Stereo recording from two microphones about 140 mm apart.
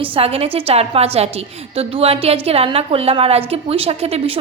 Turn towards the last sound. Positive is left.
turn(degrees=-45)  # may be behind; listen again after turning